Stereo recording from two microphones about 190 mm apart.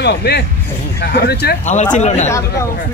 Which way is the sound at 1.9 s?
35° left (ahead or behind).